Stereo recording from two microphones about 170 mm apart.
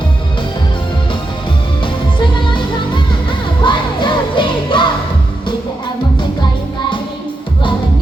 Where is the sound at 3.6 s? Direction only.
30° left (ahead or behind).